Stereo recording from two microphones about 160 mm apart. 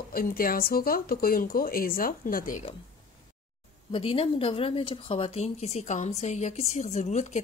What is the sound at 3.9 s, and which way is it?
A woman's voice, 35° left (ahead or behind).